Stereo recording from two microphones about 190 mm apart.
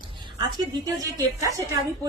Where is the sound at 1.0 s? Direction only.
15° right (ahead or behind).